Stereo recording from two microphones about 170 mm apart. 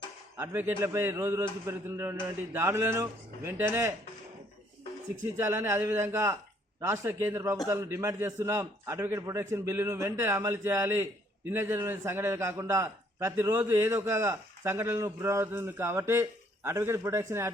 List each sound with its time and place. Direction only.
0.3 s a man's voice: 10° right (ahead or behind)
5.2 s a man's voice: 15° right (ahead or behind)